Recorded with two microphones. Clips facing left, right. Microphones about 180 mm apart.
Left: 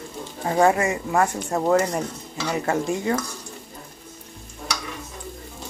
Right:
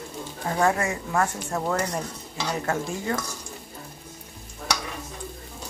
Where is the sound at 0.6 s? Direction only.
15° left (ahead or behind).